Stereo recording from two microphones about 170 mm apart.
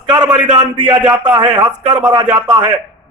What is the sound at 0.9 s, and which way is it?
Speech, 10° right (ahead or behind).